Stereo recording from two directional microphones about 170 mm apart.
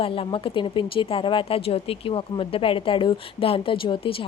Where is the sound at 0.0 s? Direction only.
30° left (ahead or behind).